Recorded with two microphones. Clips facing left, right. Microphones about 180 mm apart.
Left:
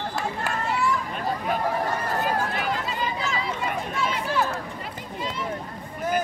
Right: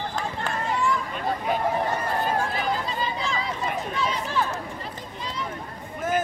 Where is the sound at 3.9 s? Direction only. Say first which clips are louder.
Left 1 dB; 5° left (ahead or behind).